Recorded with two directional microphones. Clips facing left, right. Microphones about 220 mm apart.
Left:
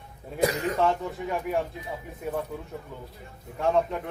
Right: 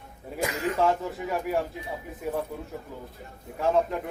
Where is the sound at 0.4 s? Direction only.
35° left (ahead or behind).